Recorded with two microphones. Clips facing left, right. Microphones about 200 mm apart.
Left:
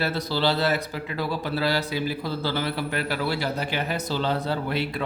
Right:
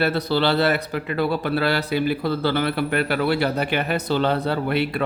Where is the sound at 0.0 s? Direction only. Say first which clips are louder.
Right 4 dB; 60° right (ahead or behind).